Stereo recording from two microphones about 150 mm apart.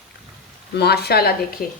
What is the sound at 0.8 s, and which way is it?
Speech, 90° left.